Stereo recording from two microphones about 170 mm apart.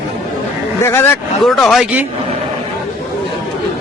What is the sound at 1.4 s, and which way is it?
Speech, centre (ahead or behind).